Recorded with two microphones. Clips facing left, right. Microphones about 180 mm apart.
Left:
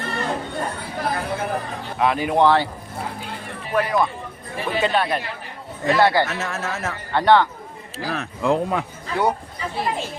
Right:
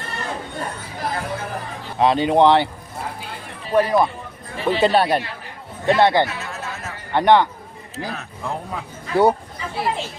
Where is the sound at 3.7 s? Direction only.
30° right (ahead or behind).